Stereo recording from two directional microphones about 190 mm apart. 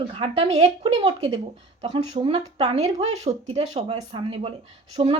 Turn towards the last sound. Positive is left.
turn(degrees=-35)  # may be behind; listen again after turning